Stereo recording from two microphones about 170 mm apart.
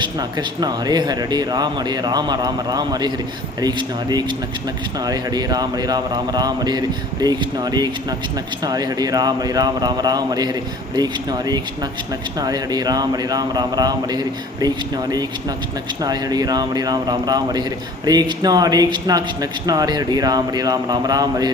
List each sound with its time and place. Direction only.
0.0 s speech: 25° right (ahead or behind)